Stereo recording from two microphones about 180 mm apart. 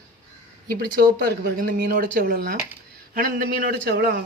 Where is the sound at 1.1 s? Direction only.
60° right (ahead or behind).